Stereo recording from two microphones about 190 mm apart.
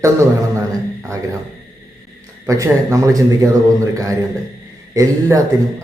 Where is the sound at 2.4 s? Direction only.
15° right (ahead or behind).